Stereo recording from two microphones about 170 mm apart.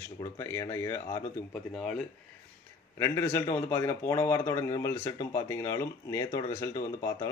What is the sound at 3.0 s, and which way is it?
Speech, 10° left (ahead or behind).